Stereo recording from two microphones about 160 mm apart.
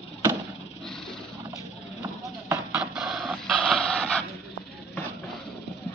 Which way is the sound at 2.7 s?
5° right (ahead or behind).